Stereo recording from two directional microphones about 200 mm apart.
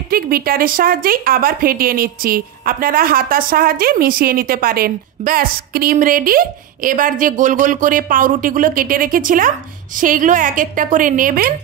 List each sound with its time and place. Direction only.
0.1 s a woman's voice: 45° right (ahead or behind)